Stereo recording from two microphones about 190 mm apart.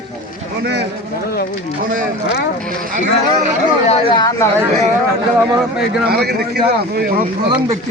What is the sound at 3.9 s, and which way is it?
Speech, 25° left (ahead or behind).